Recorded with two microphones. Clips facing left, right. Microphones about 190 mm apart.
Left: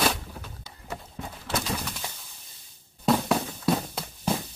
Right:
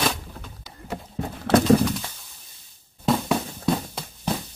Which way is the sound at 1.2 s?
60° right (ahead or behind).